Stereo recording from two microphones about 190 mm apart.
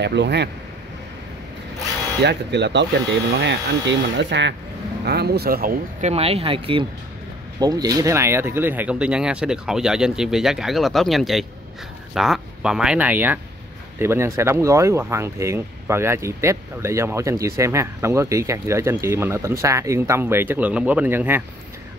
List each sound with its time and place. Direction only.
0.0 s speech: 65° right (ahead or behind)
2.2 s speech: 65° right (ahead or behind)
5.0 s speech: 60° right (ahead or behind)
6.0 s speech: 30° right (ahead or behind); by 21.5 s 10° right (ahead or behind)